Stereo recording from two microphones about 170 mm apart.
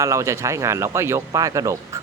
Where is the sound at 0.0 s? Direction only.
15° right (ahead or behind).